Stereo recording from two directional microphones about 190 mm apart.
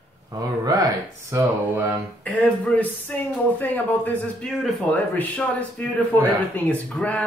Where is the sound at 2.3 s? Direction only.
10° left (ahead or behind).